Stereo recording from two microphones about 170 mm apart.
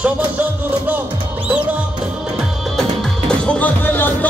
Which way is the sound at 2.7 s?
5° left (ahead or behind).